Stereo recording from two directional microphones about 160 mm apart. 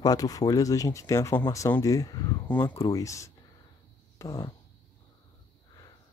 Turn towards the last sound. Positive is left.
turn(degrees=20)  # may be behind; listen again after turning